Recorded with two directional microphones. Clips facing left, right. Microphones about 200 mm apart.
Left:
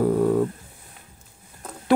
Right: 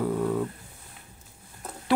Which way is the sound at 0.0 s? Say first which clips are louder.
Left 7 dB; 45° left (ahead or behind).